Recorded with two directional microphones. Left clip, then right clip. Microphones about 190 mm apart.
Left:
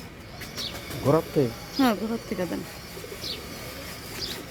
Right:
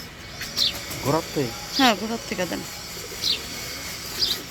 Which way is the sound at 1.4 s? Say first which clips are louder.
Left 2 dB; 45° left (ahead or behind).